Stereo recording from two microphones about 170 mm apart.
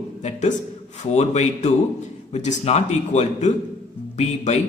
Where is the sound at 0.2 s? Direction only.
45° left (ahead or behind).